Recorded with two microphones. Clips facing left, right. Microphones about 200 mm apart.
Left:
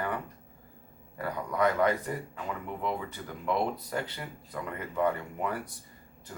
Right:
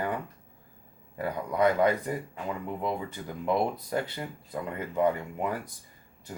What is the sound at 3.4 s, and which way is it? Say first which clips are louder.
Speech: right 2 dB; 20° right (ahead or behind).